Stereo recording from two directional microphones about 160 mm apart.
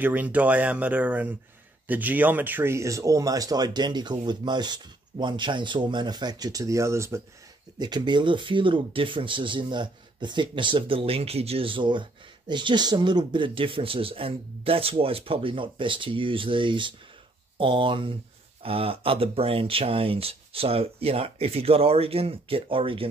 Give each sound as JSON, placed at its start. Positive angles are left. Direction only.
{"t": 0.0, "sound": "speech", "side_deg": -10}